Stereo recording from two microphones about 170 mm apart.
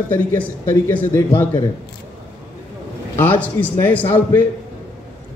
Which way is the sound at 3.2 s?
10° left (ahead or behind).